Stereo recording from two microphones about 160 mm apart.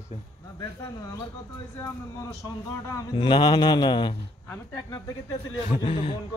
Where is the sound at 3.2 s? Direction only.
30° left (ahead or behind).